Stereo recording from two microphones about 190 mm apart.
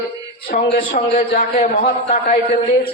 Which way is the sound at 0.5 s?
40° left (ahead or behind).